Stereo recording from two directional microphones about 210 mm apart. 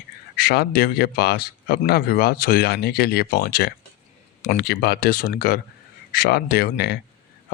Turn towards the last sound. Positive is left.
turn(degrees=50)  # may be behind; listen again after turning